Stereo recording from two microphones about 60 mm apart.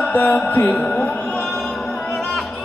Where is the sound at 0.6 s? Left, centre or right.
Centre.